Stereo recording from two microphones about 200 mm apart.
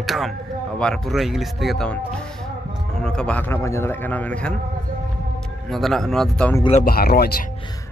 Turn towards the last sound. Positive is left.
turn(degrees=50)  # may be behind; listen again after turning